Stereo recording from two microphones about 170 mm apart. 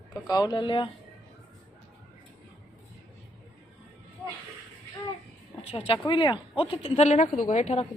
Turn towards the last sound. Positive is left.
turn(degrees=40)  # may be behind; listen again after turning